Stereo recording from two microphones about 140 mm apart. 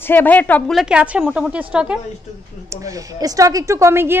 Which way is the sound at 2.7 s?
25° right (ahead or behind).